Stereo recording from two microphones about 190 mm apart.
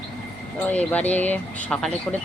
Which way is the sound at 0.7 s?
10° left (ahead or behind).